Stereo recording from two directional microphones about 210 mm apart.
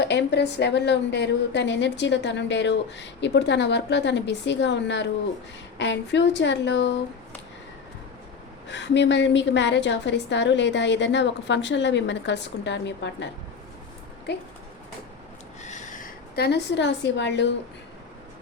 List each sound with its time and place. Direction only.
0.0 s a woman's voice: 55° left (ahead or behind)
8.7 s a woman's voice: 55° left (ahead or behind)
14.3 s speech: 55° left (ahead or behind)
15.6 s a sound: 35° left (ahead or behind); by 17.5 s 55° left (ahead or behind)